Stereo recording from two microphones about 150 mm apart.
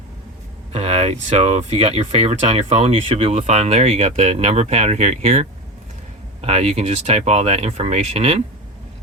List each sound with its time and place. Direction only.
0.7 s speech: 45° right (ahead or behind)